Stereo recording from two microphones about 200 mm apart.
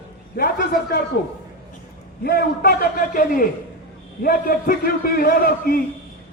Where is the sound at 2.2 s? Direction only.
50° left (ahead or behind).